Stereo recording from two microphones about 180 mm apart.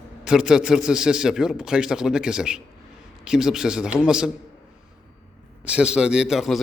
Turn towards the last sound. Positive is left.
turn(degrees=-5)  # may be behind; listen again after turning